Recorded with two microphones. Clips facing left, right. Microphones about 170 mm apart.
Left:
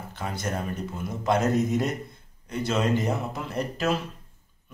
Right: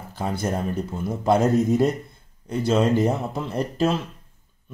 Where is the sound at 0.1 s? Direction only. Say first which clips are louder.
Right 6 dB; 35° right (ahead or behind).